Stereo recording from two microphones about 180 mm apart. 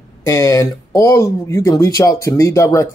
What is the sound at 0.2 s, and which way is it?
Speech, 15° left (ahead or behind).